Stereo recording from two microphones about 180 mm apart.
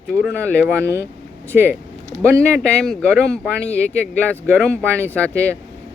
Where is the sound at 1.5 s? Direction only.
10° right (ahead or behind).